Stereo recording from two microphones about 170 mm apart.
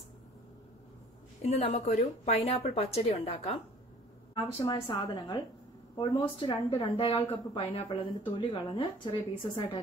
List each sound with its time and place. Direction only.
1.5 s a woman's voice: 35° left (ahead or behind)
4.5 s a woman's voice: 20° left (ahead or behind)